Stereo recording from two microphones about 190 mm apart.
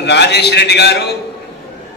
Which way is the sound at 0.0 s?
60° left (ahead or behind).